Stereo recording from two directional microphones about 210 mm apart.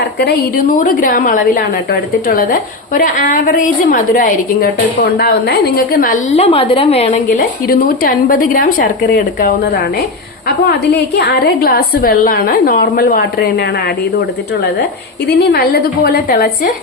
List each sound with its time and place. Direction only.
0.2 s a woman's voice: 45° left (ahead or behind)
6.3 s a woman's voice: 30° left (ahead or behind)
7.7 s a woman's voice: 45° left (ahead or behind)
11.2 s a woman's voice: 50° left (ahead or behind)
15.3 s a woman's voice: 50° left (ahead or behind)